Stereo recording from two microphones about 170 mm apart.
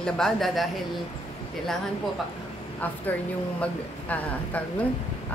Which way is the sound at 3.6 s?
10° left (ahead or behind).